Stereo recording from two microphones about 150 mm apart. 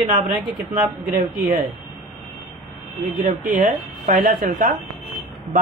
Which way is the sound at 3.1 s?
65° right (ahead or behind).